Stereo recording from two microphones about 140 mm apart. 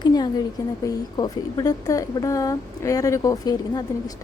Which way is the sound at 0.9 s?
30° left (ahead or behind).